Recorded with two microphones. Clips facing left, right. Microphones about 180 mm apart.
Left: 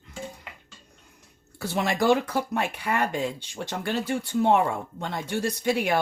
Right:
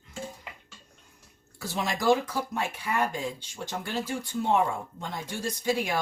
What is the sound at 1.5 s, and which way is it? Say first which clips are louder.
Speech: left 5 dB; 65° left (ahead or behind).